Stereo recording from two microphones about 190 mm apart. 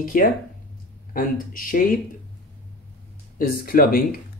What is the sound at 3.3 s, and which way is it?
Speech, 50° left (ahead or behind).